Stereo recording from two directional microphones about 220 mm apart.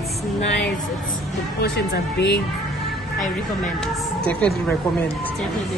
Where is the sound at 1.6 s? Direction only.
50° left (ahead or behind).